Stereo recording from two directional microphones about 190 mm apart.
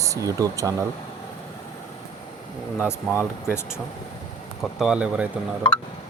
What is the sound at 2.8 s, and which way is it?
Speech, 10° left (ahead or behind).